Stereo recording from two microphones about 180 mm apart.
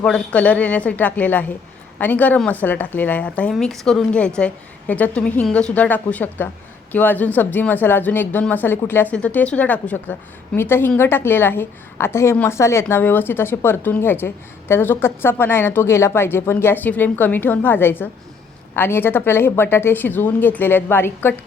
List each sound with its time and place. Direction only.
0.0 s speech: 5° left (ahead or behind)